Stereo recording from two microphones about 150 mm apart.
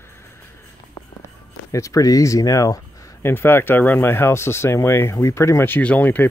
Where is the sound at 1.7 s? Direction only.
20° left (ahead or behind).